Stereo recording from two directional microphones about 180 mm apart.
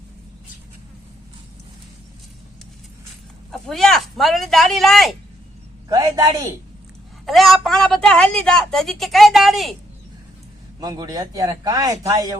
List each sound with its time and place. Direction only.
3.5 s a woman's voice: centre (ahead or behind)
5.9 s a man's voice: 20° right (ahead or behind)
7.3 s a woman's voice: centre (ahead or behind)
10.8 s a man's voice: 20° right (ahead or behind)